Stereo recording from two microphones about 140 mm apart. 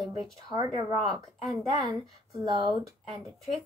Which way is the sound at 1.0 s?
Centre (ahead or behind).